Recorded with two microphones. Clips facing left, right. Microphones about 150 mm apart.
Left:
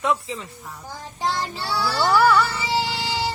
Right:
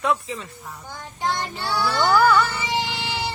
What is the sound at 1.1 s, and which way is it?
Child singing, 35° left (ahead or behind).